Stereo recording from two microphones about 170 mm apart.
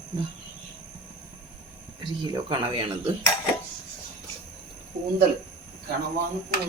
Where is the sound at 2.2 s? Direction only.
30° right (ahead or behind).